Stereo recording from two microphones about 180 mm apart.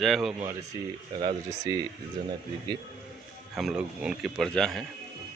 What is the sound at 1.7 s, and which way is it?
Speech, 20° right (ahead or behind).